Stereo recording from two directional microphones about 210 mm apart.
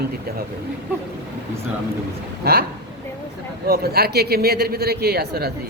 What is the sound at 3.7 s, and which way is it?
Speech, 50° right (ahead or behind).